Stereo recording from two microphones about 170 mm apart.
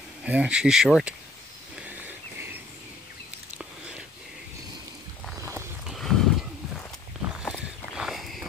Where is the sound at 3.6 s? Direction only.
5° right (ahead or behind).